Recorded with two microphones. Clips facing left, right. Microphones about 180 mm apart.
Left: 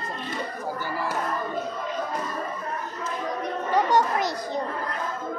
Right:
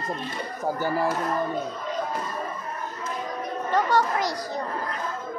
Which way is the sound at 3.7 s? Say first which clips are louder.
Left 1 dB; 20° left (ahead or behind).